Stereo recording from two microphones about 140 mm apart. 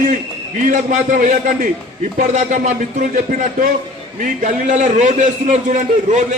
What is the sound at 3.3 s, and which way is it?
Speech, 75° right (ahead or behind).